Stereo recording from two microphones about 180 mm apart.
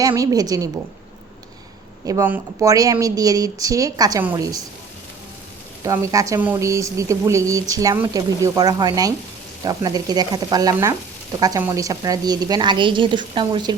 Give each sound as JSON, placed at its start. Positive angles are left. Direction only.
{"t": 0.0, "sound": "a woman's voice", "side_deg": -20}
{"t": 2.0, "sound": "a woman's voice", "side_deg": -15}
{"t": 5.8, "sound": "a woman's voice", "side_deg": -15}